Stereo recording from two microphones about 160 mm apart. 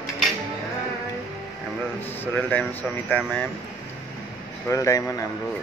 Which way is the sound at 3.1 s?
10° left (ahead or behind).